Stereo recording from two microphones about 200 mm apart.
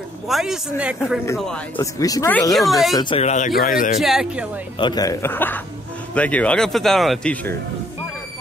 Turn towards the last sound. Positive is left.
turn(degrees=0)  # may be behind; listen again after turning